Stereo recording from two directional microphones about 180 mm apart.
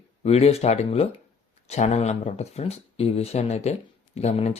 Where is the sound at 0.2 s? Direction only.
35° left (ahead or behind).